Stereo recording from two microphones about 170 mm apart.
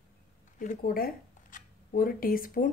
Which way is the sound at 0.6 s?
55° left (ahead or behind).